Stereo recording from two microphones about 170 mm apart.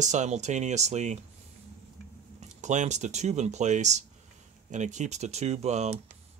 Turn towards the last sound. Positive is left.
turn(degrees=-40)  # may be behind; listen again after turning